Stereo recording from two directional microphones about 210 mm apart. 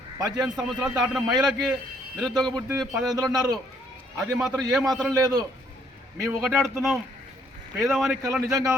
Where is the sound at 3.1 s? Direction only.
20° right (ahead or behind).